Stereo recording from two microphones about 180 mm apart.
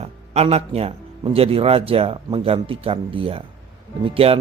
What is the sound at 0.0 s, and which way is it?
Speech, 35° right (ahead or behind).